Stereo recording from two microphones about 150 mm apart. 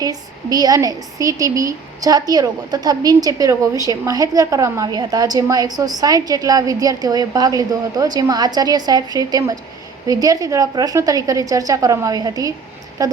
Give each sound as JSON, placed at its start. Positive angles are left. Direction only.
{"t": 0.0, "sound": "a woman's voice", "side_deg": -25}